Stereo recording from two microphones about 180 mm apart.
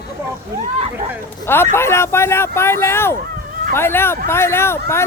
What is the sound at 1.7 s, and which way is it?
Speech, 15° left (ahead or behind).